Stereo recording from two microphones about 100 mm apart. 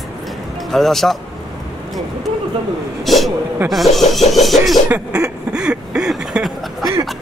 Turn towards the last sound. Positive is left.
turn(degrees=-5)  # may be behind; listen again after turning